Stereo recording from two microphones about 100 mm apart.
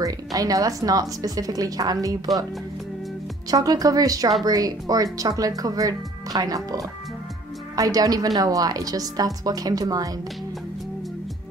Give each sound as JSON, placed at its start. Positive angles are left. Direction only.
{"t": 0.0, "sound": "a woman's voice", "side_deg": -35}
{"t": 3.4, "sound": "a woman's voice", "side_deg": -35}